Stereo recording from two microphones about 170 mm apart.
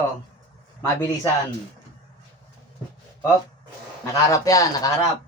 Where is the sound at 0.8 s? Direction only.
15° left (ahead or behind).